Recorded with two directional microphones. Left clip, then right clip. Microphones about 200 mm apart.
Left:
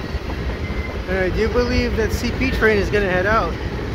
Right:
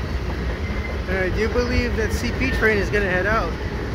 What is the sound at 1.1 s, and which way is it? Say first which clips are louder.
Speech: left 3 dB; 10° left (ahead or behind).